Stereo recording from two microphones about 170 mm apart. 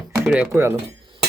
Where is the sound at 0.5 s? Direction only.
15° right (ahead or behind).